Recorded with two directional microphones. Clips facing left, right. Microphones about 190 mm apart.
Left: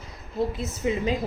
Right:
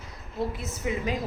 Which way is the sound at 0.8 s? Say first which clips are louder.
Left 4 dB; 25° left (ahead or behind).